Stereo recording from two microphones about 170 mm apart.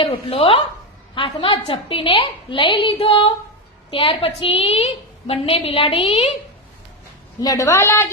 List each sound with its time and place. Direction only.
0.0 s a woman's voice: 35° left (ahead or behind)
7.4 s a woman's voice: 20° left (ahead or behind)